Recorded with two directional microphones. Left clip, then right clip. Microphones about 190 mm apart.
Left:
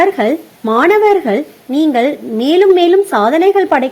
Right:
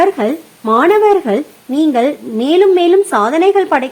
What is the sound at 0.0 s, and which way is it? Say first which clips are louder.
A woman's voice: left 1 dB; 15° left (ahead or behind).